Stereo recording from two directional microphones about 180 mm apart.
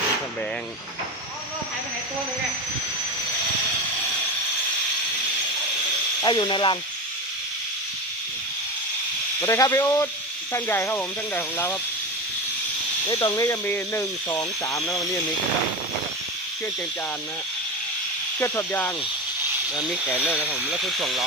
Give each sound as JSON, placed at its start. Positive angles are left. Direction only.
{"t": 6.2, "sound": "speech", "side_deg": 25}
{"t": 9.4, "sound": "speech", "side_deg": 15}
{"t": 13.1, "sound": "speech", "side_deg": 20}
{"t": 18.3, "sound": "speech", "side_deg": 10}
{"t": 20.1, "sound": "speech", "side_deg": 10}